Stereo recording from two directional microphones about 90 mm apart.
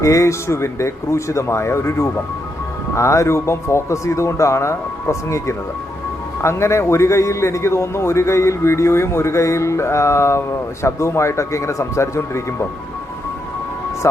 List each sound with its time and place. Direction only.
0.0 s a man's voice: 35° left (ahead or behind)
14.0 s speech: 35° left (ahead or behind)